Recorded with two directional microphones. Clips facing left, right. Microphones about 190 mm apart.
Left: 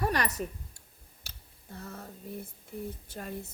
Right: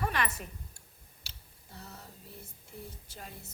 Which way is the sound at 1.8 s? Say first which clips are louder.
Left 6 dB; 55° left (ahead or behind).